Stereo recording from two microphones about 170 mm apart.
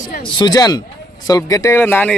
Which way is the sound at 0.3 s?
25° left (ahead or behind).